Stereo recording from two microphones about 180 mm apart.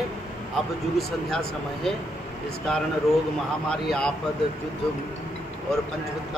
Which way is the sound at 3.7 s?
5° left (ahead or behind).